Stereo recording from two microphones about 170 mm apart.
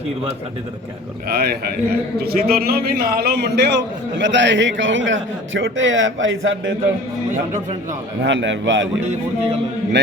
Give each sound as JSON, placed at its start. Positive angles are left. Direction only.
{"t": 1.3, "sound": "a man's voice", "side_deg": -65}
{"t": 4.2, "sound": "a man's voice", "side_deg": -90}
{"t": 8.2, "sound": "a man's voice", "side_deg": -90}